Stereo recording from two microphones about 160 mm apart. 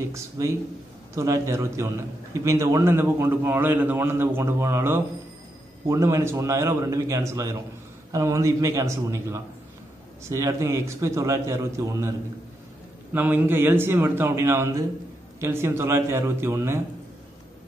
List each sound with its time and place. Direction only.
0.1 s a man's voice: 20° right (ahead or behind)
13.1 s a man's voice: 10° right (ahead or behind)